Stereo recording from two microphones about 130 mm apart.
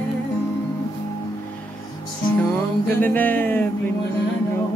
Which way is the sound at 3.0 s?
15° left (ahead or behind).